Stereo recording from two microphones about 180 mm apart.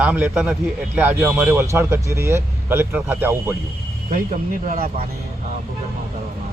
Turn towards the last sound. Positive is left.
turn(degrees=-55)  # may be behind; listen again after turning